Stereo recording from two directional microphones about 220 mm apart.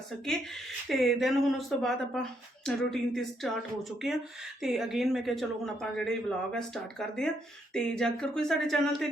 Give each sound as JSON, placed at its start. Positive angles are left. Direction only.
{"t": 0.9, "sound": "speech", "side_deg": 0}